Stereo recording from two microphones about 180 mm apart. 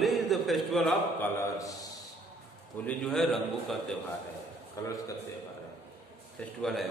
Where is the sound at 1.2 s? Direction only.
15° left (ahead or behind).